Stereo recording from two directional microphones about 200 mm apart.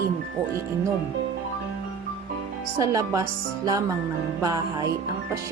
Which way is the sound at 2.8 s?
15° right (ahead or behind).